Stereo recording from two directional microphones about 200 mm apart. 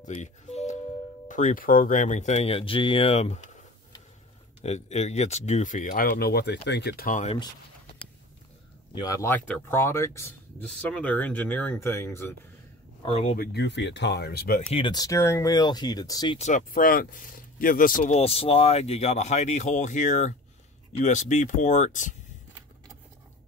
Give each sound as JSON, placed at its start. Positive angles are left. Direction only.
{"t": 0.0, "sound": "music", "side_deg": 35}
{"t": 1.3, "sound": "speech", "side_deg": 40}
{"t": 4.6, "sound": "speech", "side_deg": 35}
{"t": 9.0, "sound": "speech", "side_deg": 15}
{"t": 13.0, "sound": "speech", "side_deg": 30}
{"t": 13.5, "sound": "speech", "side_deg": 60}
{"t": 14.7, "sound": "speech", "side_deg": 25}
{"t": 16.3, "sound": "speech", "side_deg": 40}